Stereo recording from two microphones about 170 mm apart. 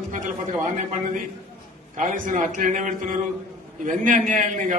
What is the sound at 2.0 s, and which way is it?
A man's voice, 50° right (ahead or behind).